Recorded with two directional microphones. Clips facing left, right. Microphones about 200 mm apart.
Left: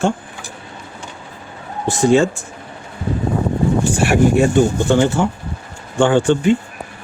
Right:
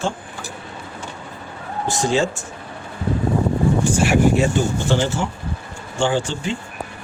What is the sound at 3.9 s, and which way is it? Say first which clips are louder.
Speech: left 3 dB; 60° left (ahead or behind).